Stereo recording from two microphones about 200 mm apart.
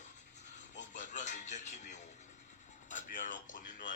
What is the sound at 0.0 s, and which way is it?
Music, 35° left (ahead or behind).